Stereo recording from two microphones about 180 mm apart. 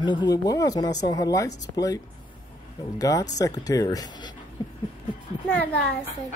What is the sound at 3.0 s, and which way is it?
Speech, 20° left (ahead or behind).